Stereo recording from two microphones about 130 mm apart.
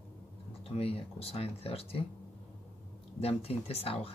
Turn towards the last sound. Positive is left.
turn(degrees=50)  # may be behind; listen again after turning